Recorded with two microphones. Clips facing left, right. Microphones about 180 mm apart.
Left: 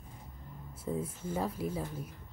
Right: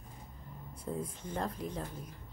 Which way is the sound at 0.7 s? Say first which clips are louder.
Left 3 dB; 5° left (ahead or behind).